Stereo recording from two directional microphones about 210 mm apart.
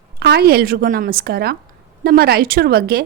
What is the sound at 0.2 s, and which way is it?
A woman's voice, 45° right (ahead or behind).